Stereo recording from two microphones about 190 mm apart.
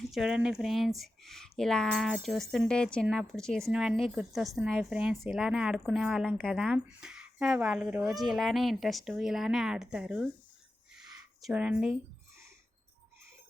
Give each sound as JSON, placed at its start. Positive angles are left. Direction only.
{"t": 0.1, "sound": "speech", "side_deg": -5}
{"t": 11.4, "sound": "speech", "side_deg": -5}